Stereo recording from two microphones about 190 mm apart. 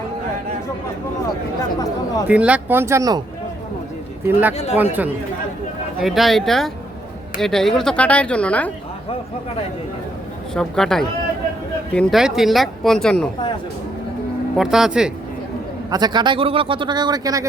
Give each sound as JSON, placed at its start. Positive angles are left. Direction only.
{"t": 2.2, "sound": "speech", "side_deg": -5}
{"t": 4.3, "sound": "speech", "side_deg": -10}
{"t": 10.5, "sound": "speech", "side_deg": 5}
{"t": 14.5, "sound": "speech", "side_deg": 0}
{"t": 15.9, "sound": "a man's voice", "side_deg": -20}